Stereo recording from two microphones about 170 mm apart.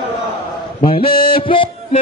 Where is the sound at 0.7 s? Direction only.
30° left (ahead or behind).